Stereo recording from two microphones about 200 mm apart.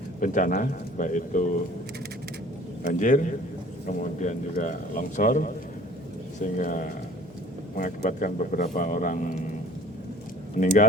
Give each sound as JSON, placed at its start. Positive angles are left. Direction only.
{"t": 0.2, "sound": "a man's voice", "side_deg": 40}
{"t": 2.8, "sound": "a man's voice", "side_deg": 40}
{"t": 10.6, "sound": "a man's voice", "side_deg": 40}